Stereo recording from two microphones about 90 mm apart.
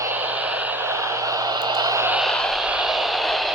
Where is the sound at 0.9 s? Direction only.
35° right (ahead or behind).